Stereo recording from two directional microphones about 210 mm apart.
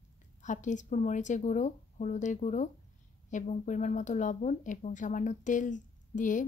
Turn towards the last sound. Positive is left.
turn(degrees=40)  # may be behind; listen again after turning